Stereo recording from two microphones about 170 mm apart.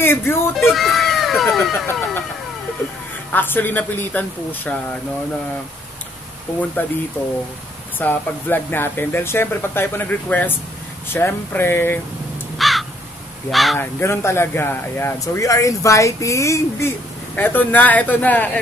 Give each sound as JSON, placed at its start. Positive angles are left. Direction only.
{"t": 0.0, "sound": "speech", "side_deg": 15}
{"t": 0.6, "sound": "speech", "side_deg": 0}
{"t": 3.3, "sound": "speech", "side_deg": 10}
{"t": 6.8, "sound": "speech", "side_deg": 10}
{"t": 8.0, "sound": "speech", "side_deg": 10}
{"t": 12.5, "sound": "crow", "side_deg": 0}
{"t": 13.5, "sound": "speech", "side_deg": 0}
{"t": 13.7, "sound": "speech", "side_deg": 15}